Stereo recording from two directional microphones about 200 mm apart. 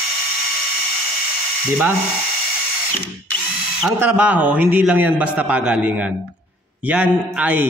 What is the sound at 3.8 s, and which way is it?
A man's voice, 10° right (ahead or behind).